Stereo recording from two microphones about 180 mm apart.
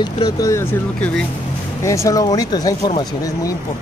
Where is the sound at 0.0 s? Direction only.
20° left (ahead or behind).